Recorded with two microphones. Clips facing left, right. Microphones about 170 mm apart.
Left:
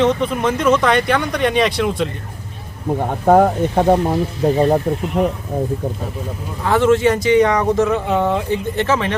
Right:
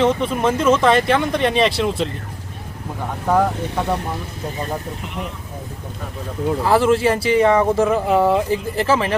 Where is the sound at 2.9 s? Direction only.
50° left (ahead or behind).